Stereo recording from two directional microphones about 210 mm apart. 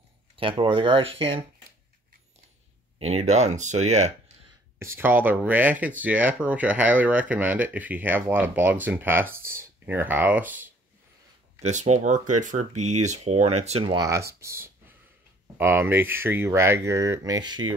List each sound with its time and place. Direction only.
0.4 s speech: 25° right (ahead or behind)
3.0 s speech: 30° right (ahead or behind)
4.7 s speech: 10° right (ahead or behind)
11.6 s speech: 35° right (ahead or behind)